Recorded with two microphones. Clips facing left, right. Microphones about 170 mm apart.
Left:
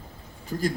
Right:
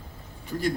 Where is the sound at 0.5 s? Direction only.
40° left (ahead or behind).